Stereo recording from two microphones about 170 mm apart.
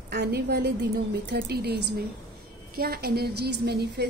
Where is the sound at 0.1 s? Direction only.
75° right (ahead or behind).